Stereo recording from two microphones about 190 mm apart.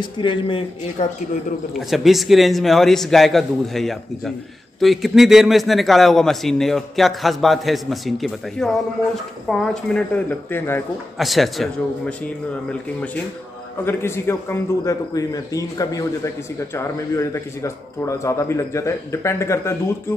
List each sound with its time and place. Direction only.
0.0 s speech: 25° left (ahead or behind)
1.8 s a man's voice: centre (ahead or behind)
13.8 s a man's voice: 10° left (ahead or behind)